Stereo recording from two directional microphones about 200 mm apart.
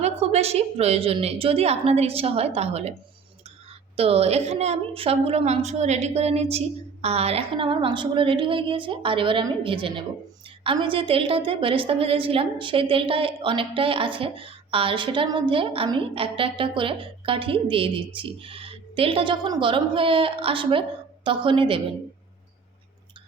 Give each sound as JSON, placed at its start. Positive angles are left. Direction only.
{"t": 0.0, "sound": "a woman's voice", "side_deg": -30}
{"t": 3.9, "sound": "a woman's voice", "side_deg": -30}